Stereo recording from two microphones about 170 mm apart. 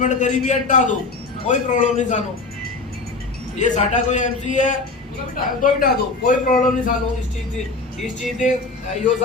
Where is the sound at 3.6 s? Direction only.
45° left (ahead or behind).